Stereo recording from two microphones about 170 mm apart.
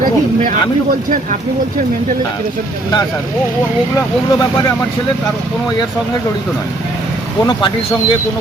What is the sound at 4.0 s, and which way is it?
Speech, 15° left (ahead or behind).